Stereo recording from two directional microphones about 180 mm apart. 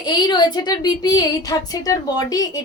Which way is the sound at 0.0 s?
25° left (ahead or behind).